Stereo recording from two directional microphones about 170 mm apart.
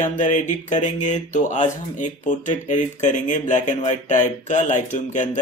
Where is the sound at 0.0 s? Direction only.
45° left (ahead or behind).